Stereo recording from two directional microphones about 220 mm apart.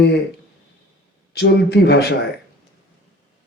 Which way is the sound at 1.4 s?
50° left (ahead or behind).